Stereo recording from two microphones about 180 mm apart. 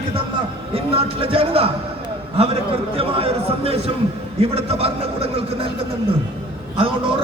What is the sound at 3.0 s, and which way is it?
Speech, 30° right (ahead or behind).